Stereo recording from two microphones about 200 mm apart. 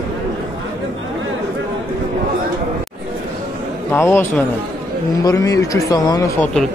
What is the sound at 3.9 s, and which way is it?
A man's voice, 10° left (ahead or behind).